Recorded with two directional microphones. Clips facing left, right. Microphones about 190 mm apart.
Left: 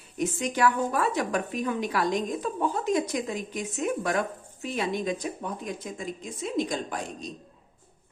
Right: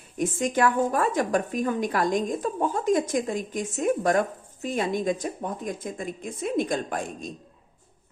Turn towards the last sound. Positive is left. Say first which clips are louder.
# right 3 dB
turn(degrees=-50)  # may be behind; listen again after turning